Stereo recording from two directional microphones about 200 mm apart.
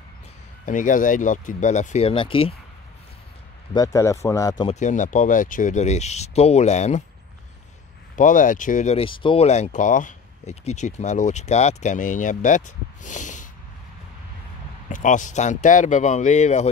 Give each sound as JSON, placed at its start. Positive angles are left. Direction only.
{"t": 0.7, "sound": "speech", "side_deg": 40}
{"t": 3.7, "sound": "speech", "side_deg": 15}
{"t": 4.6, "sound": "speech", "side_deg": 35}
{"t": 8.2, "sound": "speech", "side_deg": 40}
{"t": 14.9, "sound": "speech", "side_deg": 40}